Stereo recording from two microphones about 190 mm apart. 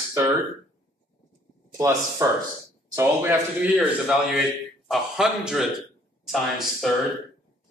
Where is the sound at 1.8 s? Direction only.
15° right (ahead or behind).